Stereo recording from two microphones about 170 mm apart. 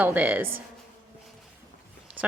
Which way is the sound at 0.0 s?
10° right (ahead or behind).